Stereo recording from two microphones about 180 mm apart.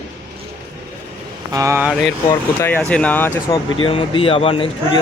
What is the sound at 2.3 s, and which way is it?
Speech, 15° left (ahead or behind).